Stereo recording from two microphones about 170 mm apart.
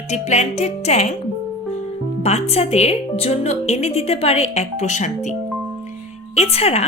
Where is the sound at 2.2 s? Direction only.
40° left (ahead or behind).